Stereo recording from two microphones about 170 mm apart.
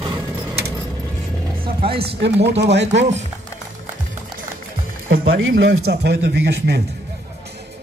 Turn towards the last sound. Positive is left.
turn(degrees=-80)